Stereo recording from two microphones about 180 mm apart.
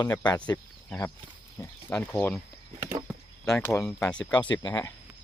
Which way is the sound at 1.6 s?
15° left (ahead or behind).